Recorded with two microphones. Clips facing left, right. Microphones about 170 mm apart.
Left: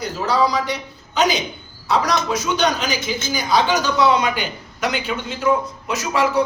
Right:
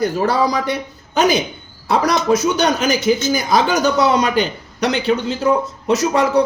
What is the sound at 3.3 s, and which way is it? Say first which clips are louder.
A man's voice: right 2 dB; 45° right (ahead or behind).